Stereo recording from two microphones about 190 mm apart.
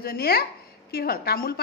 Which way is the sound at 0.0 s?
55° left (ahead or behind).